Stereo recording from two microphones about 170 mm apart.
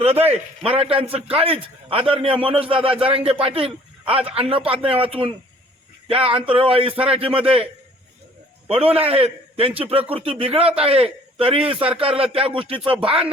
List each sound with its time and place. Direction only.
0.0 s a man's voice: 35° right (ahead or behind)
8.7 s a man's voice: 35° right (ahead or behind)